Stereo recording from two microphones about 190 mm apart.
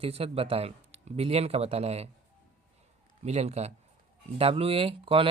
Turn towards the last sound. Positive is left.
turn(degrees=-30)  # may be behind; listen again after turning